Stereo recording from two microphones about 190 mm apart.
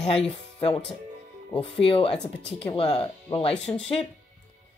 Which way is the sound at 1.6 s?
30° left (ahead or behind).